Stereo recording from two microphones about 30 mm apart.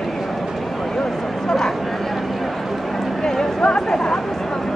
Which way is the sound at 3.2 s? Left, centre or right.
Centre.